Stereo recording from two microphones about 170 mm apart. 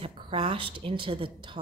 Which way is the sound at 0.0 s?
30° right (ahead or behind).